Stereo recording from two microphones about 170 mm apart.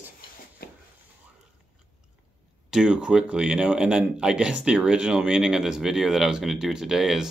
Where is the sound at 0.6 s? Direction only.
65° left (ahead or behind).